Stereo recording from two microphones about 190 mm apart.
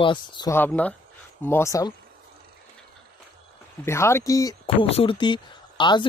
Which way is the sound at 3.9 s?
15° left (ahead or behind).